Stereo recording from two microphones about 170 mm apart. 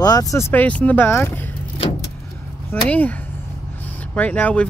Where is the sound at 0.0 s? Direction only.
20° left (ahead or behind).